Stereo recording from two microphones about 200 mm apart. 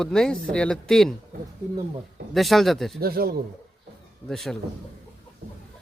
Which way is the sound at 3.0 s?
50° right (ahead or behind).